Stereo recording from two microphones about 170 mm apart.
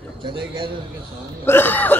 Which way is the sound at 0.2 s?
30° right (ahead or behind).